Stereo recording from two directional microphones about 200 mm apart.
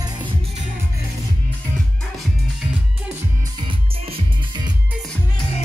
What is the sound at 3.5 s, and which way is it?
Music, 25° right (ahead or behind).